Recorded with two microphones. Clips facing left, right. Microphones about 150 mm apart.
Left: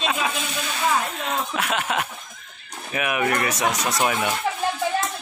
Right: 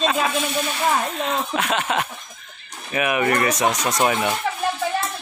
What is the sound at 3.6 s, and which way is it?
Speech, 20° right (ahead or behind).